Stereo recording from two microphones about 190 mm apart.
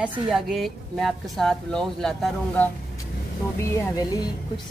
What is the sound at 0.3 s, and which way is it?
A woman's voice, centre (ahead or behind).